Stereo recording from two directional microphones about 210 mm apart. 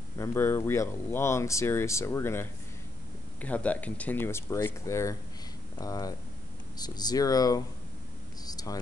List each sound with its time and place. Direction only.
0.2 s speech: 10° left (ahead or behind)
8.5 s air conditioning: 15° left (ahead or behind)